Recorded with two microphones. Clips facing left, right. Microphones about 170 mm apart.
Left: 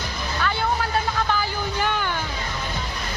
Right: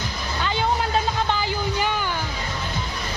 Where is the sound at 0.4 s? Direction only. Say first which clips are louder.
Right 1 dB; 20° right (ahead or behind).